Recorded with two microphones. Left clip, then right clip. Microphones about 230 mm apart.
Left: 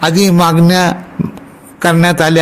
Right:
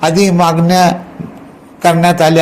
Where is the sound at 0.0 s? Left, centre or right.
Left.